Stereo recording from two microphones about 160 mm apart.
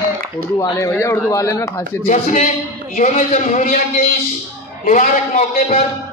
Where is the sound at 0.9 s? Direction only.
15° left (ahead or behind).